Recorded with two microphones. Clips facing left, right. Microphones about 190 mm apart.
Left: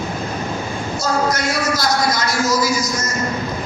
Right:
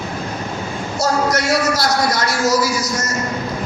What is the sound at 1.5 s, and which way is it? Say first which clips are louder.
Music: right 2 dB; 75° right (ahead or behind).